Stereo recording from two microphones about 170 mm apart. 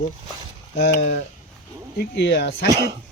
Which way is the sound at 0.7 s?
80° left.